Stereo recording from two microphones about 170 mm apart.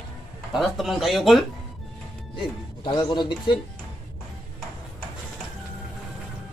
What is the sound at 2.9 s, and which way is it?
Speech, 25° left (ahead or behind).